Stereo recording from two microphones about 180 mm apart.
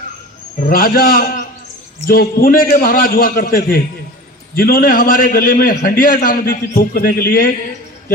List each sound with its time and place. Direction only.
0.6 s a man's voice: 55° left (ahead or behind)